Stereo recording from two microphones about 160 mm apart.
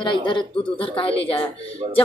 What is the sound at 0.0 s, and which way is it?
Speech, 30° left (ahead or behind).